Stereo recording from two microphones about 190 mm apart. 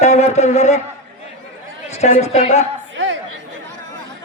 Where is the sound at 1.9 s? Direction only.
35° left (ahead or behind).